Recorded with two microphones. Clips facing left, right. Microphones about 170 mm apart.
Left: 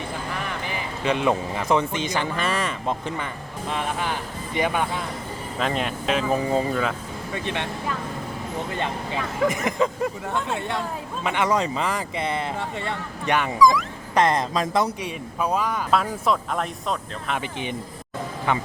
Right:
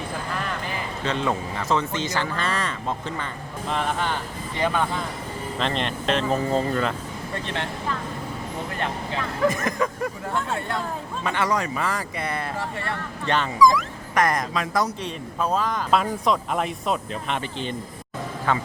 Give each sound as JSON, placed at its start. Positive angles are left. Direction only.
{"t": 1.0, "sound": "speech", "side_deg": 15}
{"t": 4.5, "sound": "speech", "side_deg": 15}
{"t": 8.7, "sound": "speech", "side_deg": 20}
{"t": 13.6, "sound": "speech", "side_deg": 0}
{"t": 14.2, "sound": "speech", "side_deg": 30}
{"t": 15.0, "sound": "speech", "side_deg": 10}
{"t": 15.9, "sound": "speech", "side_deg": 0}
{"t": 18.5, "sound": "speech", "side_deg": 20}